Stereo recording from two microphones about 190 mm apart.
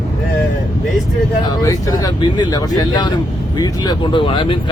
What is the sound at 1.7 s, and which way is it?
Speech, 20° left (ahead or behind).